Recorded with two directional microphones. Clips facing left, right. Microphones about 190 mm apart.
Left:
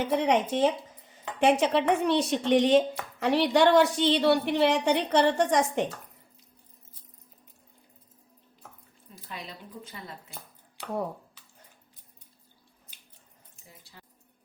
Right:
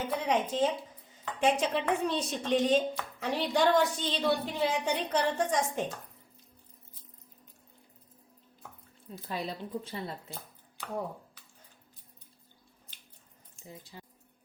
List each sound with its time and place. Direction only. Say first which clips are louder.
0.1 s speech: left 5 dB; 75° left (ahead or behind)
9.3 s speech: right 6 dB; 30° right (ahead or behind)
13.9 s a sound: right 5 dB; 20° right (ahead or behind)